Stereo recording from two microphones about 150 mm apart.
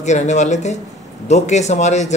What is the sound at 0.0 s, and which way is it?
A man's voice, 50° left (ahead or behind).